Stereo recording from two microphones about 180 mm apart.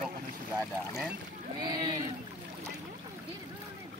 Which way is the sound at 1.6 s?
20° right (ahead or behind).